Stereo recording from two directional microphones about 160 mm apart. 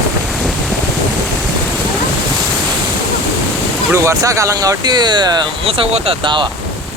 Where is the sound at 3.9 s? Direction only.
20° right (ahead or behind).